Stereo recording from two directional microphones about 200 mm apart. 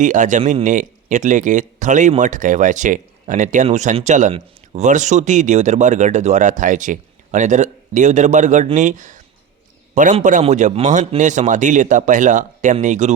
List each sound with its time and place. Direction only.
0.0 s speech: 40° right (ahead or behind)